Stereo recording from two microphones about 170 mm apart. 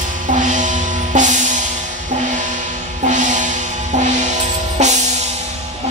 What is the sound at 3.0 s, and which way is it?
Music, 45° right (ahead or behind).